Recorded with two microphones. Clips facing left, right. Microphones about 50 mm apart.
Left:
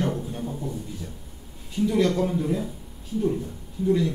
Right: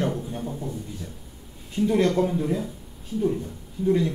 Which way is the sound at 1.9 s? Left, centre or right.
Right.